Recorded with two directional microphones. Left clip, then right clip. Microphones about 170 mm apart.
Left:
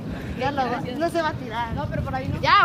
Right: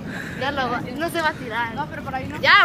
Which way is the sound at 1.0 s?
60° left (ahead or behind).